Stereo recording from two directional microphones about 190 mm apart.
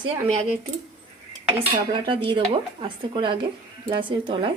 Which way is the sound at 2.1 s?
25° right (ahead or behind).